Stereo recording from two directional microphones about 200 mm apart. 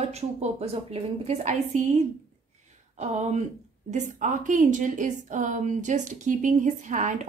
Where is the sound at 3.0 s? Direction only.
35° right (ahead or behind).